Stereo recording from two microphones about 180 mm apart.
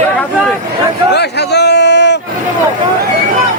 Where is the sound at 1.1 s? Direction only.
65° left (ahead or behind).